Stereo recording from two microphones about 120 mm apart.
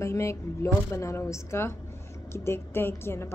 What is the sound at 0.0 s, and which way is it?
A woman's voice, 25° left (ahead or behind).